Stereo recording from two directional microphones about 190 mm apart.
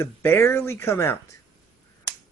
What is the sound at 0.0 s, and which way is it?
Speech, 10° left (ahead or behind).